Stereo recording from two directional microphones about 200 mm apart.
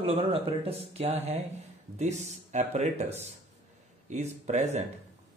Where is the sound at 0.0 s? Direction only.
30° right (ahead or behind).